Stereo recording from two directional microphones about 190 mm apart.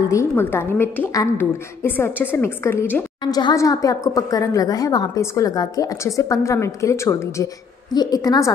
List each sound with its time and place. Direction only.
0.1 s a woman's voice: 15° left (ahead or behind)